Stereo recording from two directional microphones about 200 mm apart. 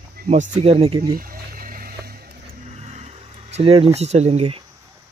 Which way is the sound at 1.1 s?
45° right (ahead or behind).